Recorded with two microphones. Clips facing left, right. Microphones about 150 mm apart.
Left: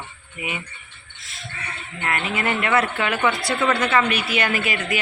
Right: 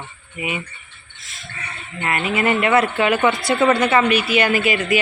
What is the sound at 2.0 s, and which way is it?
Speech, 10° right (ahead or behind).